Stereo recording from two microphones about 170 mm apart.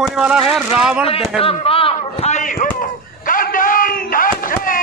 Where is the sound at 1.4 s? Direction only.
35° left (ahead or behind).